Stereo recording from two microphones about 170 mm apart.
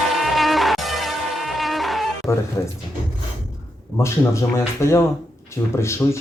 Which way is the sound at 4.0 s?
15° left (ahead or behind).